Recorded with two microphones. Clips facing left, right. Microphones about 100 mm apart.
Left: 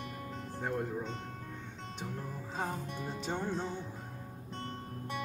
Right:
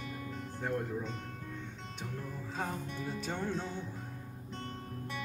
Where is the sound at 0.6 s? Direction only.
10° left (ahead or behind).